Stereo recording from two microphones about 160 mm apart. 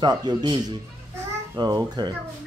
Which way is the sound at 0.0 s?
25° right (ahead or behind).